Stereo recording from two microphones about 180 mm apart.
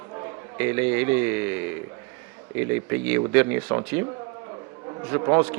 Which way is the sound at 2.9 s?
10° right (ahead or behind).